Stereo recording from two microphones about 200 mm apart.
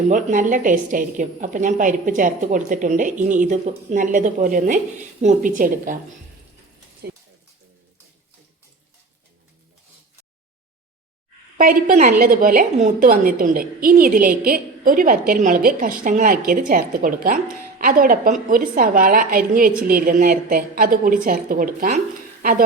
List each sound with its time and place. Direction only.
0.1 s a woman's voice: 40° right (ahead or behind)
11.5 s a woman's voice: 45° right (ahead or behind)